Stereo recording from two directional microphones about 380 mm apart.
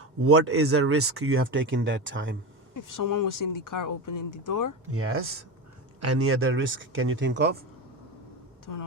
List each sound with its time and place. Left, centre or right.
0.0 s speech: right
2.7 s speech: left
4.9 s speech: right